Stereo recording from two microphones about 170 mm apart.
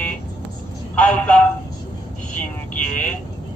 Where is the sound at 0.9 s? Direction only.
5° left (ahead or behind).